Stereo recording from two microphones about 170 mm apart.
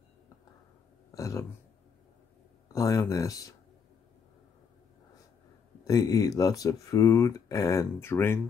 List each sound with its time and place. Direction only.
1.1 s a sound: 20° left (ahead or behind)
2.7 s speech: 20° left (ahead or behind)
5.9 s speech: 20° left (ahead or behind)